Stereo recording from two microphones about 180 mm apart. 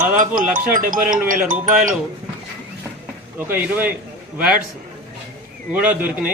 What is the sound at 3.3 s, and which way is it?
Speech, 10° right (ahead or behind).